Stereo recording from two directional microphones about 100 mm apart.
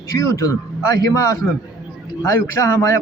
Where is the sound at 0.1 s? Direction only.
35° left (ahead or behind).